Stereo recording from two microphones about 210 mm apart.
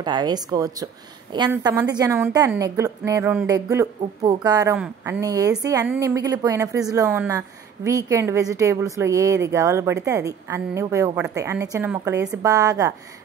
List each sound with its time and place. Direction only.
0.0 s a woman's voice: 20° right (ahead or behind)
4.7 s speech: 5° right (ahead or behind)
5.2 s a woman's voice: 15° right (ahead or behind)